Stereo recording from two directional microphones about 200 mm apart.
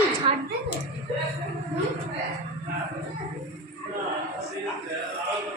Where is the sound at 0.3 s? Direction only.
25° right (ahead or behind).